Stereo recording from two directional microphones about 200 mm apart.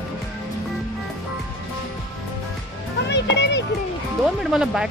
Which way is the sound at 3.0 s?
60° left (ahead or behind).